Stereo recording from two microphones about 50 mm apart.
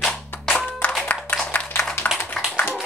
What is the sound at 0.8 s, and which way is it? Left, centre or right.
Clapping, left.